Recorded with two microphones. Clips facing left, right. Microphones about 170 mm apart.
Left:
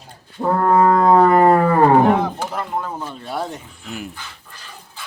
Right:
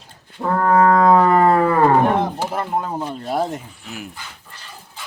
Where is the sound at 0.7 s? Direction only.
15° left (ahead or behind).